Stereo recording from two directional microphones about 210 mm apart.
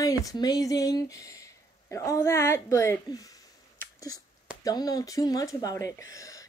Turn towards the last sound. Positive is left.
turn(degrees=15)  # may be behind; listen again after turning